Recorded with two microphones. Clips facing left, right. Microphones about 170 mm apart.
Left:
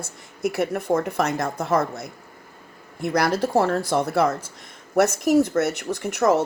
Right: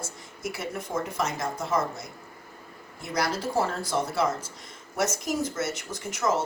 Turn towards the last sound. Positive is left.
turn(degrees=60)  # may be behind; listen again after turning